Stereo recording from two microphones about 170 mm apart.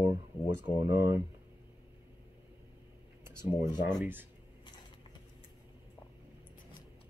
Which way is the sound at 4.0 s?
10° right (ahead or behind).